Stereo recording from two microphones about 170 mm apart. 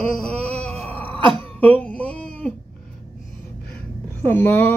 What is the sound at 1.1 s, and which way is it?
Throat clearing, 30° right (ahead or behind).